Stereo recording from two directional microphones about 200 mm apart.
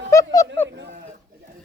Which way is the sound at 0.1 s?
15° left (ahead or behind).